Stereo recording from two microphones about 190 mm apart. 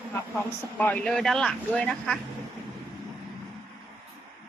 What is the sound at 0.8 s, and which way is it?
Speech, 5° left (ahead or behind).